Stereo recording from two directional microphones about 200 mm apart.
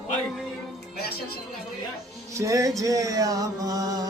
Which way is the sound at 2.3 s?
15° right (ahead or behind).